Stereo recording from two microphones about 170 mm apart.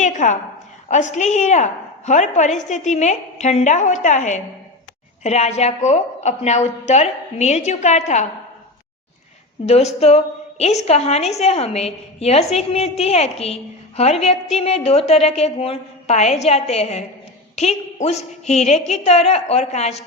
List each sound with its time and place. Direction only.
0.0 s a sound: 45° left (ahead or behind)
0.9 s a woman's voice: 45° left (ahead or behind)
9.6 s a woman's voice: 40° left (ahead or behind)